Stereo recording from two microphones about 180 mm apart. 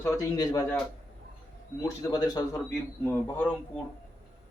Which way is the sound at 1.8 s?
20° left (ahead or behind).